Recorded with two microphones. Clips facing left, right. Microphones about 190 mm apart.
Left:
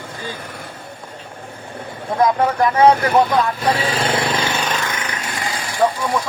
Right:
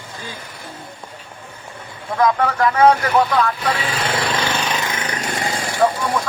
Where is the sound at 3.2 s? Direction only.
45° left (ahead or behind).